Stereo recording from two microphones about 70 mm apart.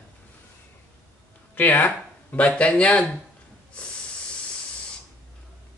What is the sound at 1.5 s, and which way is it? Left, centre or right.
Speech, left.